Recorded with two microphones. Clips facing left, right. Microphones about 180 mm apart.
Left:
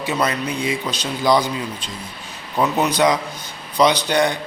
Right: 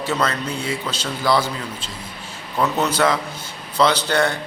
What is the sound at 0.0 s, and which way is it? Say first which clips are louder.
A man's voice: left 1 dB; 15° left (ahead or behind).